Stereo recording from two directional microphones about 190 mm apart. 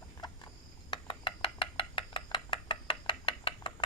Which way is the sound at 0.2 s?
20° left (ahead or behind).